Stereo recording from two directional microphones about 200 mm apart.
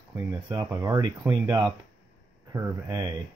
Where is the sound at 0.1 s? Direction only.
15° right (ahead or behind).